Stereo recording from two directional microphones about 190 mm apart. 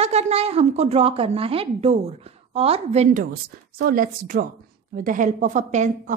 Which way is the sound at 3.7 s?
50° right (ahead or behind).